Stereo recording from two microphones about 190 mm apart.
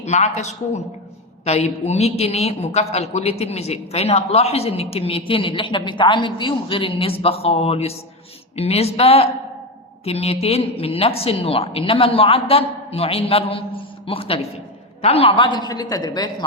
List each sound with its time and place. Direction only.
0.0 s a woman's voice: 35° left (ahead or behind); by 16.3 s 20° left (ahead or behind)